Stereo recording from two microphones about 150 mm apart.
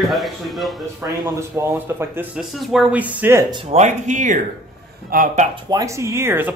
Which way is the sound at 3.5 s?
40° right (ahead or behind).